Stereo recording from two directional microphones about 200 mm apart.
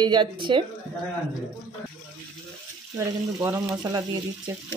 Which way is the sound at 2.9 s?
5° right (ahead or behind).